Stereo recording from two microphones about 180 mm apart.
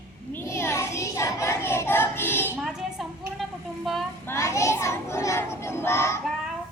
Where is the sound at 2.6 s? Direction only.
Centre (ahead or behind).